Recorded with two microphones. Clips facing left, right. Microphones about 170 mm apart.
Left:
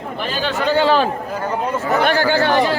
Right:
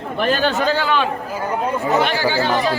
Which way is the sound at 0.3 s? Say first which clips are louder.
Right 5 dB; 55° right (ahead or behind).